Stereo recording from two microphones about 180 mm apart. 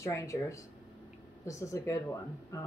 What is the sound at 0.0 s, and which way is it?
Speech, 15° left (ahead or behind).